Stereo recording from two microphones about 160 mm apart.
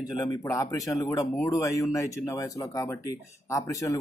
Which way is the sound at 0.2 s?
20° left (ahead or behind).